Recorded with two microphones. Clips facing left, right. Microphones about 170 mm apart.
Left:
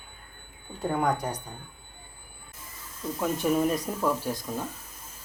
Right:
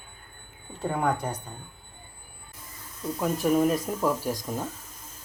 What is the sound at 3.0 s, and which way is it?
Speech, centre (ahead or behind).